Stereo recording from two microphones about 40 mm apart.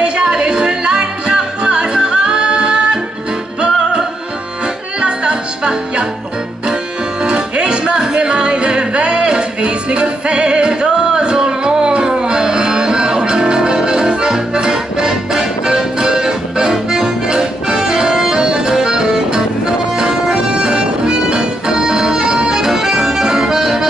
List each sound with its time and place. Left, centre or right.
0.0 s music: centre
5.0 s music: right
7.2 s music: right
16.9 s accordion: centre